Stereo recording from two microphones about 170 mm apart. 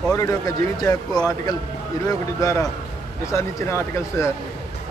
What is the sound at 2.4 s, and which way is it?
Speech, 20° left (ahead or behind).